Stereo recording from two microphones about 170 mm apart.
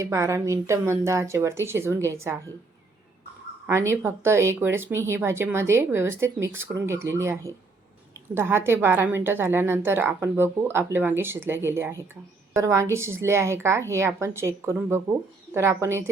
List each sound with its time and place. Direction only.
0.0 s a woman's voice: 15° right (ahead or behind)
3.7 s a woman's voice: 15° right (ahead or behind)